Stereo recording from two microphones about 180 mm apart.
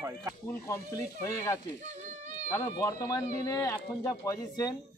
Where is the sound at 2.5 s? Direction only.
15° left (ahead or behind).